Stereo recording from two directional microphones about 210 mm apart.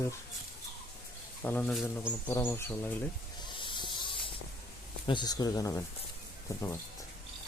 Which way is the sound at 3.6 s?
25° left (ahead or behind).